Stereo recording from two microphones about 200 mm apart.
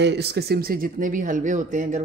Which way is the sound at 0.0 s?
55° right (ahead or behind).